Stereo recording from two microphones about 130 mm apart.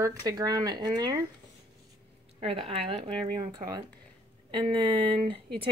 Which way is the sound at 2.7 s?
45° right (ahead or behind).